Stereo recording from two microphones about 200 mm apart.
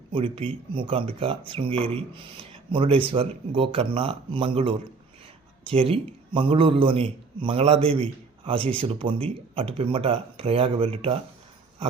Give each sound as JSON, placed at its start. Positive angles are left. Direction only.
{"t": 0.1, "sound": "a man's voice", "side_deg": -25}